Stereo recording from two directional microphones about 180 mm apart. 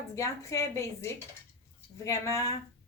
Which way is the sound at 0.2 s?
15° left (ahead or behind).